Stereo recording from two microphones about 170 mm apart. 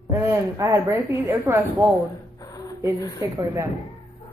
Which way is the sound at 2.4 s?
20° left (ahead or behind).